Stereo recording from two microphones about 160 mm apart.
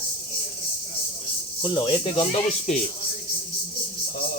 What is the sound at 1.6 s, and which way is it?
Speech, 30° left (ahead or behind).